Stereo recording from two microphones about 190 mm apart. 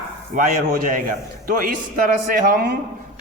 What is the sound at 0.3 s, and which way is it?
A man's voice, 45° right (ahead or behind).